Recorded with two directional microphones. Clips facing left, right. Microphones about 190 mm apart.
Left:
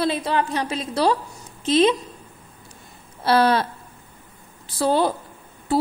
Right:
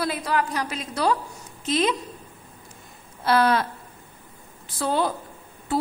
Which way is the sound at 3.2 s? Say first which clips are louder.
Left 2 dB; 30° left (ahead or behind).